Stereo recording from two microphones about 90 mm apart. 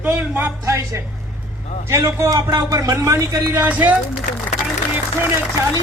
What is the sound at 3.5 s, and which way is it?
Speech, 20° right (ahead or behind).